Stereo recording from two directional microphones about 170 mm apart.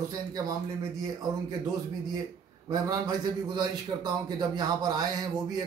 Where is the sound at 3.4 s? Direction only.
25° right (ahead or behind).